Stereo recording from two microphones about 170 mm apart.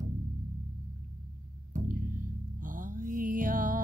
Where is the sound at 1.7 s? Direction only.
55° right (ahead or behind).